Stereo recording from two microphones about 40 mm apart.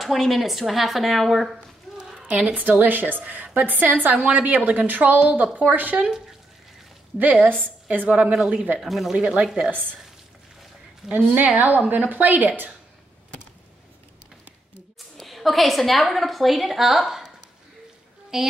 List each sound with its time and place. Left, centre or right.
0.0 s a woman's voice: centre
2.2 s a woman's voice: right
2.8 s a woman's voice: right
7.6 s a woman's voice: right
8.1 s speech: right
8.7 s a woman's voice: centre
9.1 s speech: right
9.7 s a woman's voice: right
11.0 s a woman's voice: centre
11.3 s a woman's voice: right
15.1 s a woman's voice: centre
18.3 s a woman's voice: centre